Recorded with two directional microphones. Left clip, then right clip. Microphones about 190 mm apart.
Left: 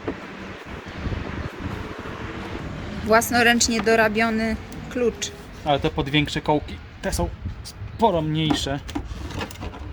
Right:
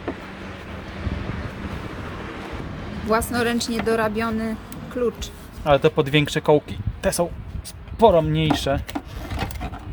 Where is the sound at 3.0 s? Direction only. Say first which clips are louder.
Left 5 dB; 5° left (ahead or behind).